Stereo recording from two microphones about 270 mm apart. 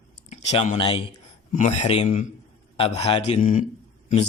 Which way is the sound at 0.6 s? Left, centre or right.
Centre.